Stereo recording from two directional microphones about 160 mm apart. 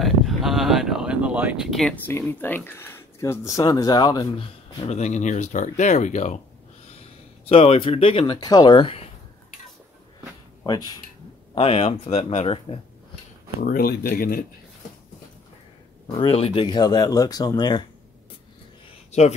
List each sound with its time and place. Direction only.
0.0 s a sound: centre (ahead or behind)
2.0 s speech: 10° left (ahead or behind); by 6.4 s 45° left (ahead or behind)
7.4 s speech: 40° left (ahead or behind)
10.6 s speech: 25° left (ahead or behind)
11.5 s speech: 40° left (ahead or behind)
13.6 s speech: 70° left (ahead or behind)
16.2 s speech: 40° left (ahead or behind)